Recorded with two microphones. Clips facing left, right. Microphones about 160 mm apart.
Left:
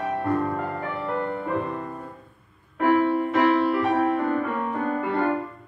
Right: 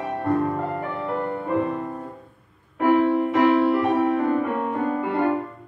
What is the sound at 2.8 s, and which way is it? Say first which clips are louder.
Music: right 2 dB; 20° right (ahead or behind).